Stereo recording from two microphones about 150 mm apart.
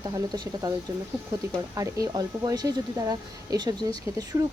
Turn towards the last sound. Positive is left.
turn(degrees=-25)  # may be behind; listen again after turning